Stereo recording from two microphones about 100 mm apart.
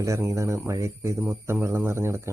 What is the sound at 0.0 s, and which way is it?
Speech, 30° right (ahead or behind).